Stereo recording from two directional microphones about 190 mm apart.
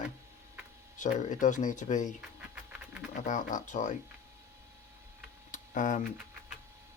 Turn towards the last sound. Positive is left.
turn(degrees=45)  # may be behind; listen again after turning